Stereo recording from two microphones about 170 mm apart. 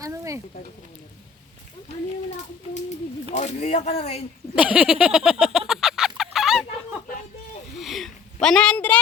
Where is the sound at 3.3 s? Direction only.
40° left (ahead or behind).